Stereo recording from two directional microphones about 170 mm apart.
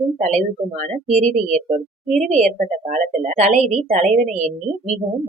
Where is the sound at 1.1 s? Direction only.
40° right (ahead or behind).